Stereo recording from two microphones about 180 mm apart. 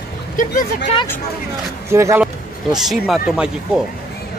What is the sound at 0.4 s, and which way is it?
Speech, 55° left (ahead or behind).